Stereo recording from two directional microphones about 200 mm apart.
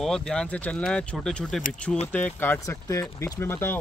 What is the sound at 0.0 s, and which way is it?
Speech, 5° left (ahead or behind).